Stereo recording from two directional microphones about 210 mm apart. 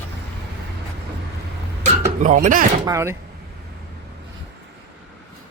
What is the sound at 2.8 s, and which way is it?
Speech, 15° right (ahead or behind).